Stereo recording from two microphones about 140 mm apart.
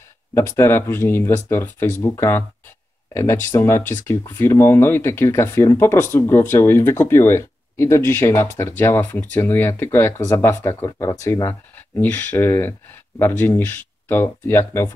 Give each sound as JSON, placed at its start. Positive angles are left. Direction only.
{"t": 0.3, "sound": "speech", "side_deg": 15}